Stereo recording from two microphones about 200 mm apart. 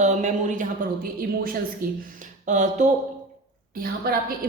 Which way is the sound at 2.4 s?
35° right (ahead or behind).